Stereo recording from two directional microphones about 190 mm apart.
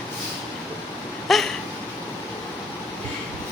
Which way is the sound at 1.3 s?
Centre (ahead or behind).